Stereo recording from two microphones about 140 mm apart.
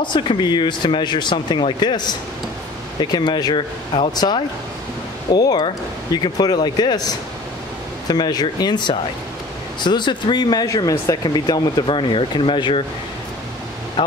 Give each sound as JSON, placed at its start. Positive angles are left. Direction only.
{"t": 0.0, "sound": "speech", "side_deg": 35}
{"t": 14.0, "sound": "speech", "side_deg": 40}